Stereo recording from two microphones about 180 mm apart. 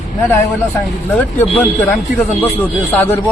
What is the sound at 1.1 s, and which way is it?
A man's voice, 10° left (ahead or behind).